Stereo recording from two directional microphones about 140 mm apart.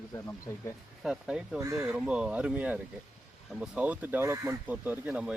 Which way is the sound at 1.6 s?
20° right (ahead or behind).